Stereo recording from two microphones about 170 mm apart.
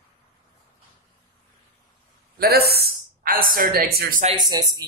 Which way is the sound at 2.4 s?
65° right (ahead or behind).